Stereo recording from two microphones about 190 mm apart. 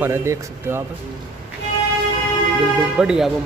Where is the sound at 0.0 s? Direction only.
15° right (ahead or behind).